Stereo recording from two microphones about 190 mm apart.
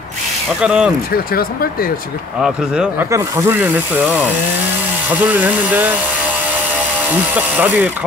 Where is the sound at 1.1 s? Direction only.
50° left (ahead or behind).